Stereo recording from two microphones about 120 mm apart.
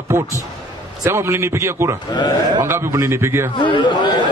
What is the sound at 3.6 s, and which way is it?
Speech, 40° left (ahead or behind).